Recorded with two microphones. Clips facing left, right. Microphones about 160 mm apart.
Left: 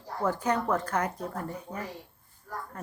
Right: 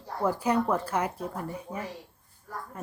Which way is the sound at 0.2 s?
10° right (ahead or behind).